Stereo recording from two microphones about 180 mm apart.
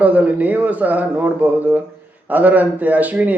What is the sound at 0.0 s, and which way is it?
Speech, 10° right (ahead or behind).